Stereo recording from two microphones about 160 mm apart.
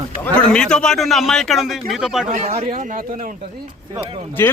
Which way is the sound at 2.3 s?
55° right (ahead or behind).